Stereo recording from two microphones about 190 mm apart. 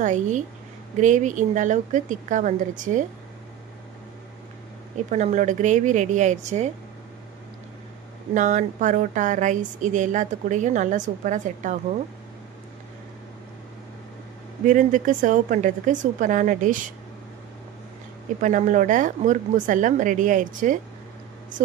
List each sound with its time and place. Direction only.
0.0 s a woman's voice: 40° right (ahead or behind)
5.1 s a woman's voice: 40° right (ahead or behind)
8.4 s a woman's voice: 40° right (ahead or behind)
14.7 s speech: 45° right (ahead or behind)
18.4 s speech: 40° right (ahead or behind)